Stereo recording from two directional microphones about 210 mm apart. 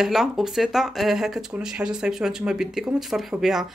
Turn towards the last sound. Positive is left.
turn(degrees=0)  # may be behind; listen again after turning